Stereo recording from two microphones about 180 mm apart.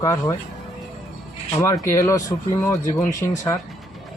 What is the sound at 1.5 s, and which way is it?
Speech, 15° left (ahead or behind).